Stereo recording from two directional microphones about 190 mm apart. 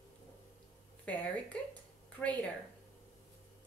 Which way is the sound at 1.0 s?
5° left (ahead or behind).